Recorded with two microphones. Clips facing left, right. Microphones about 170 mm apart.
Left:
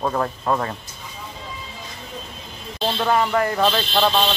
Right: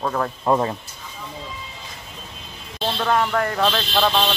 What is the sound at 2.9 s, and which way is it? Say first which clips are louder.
A man's voice: left 1 dB; 5° left (ahead or behind).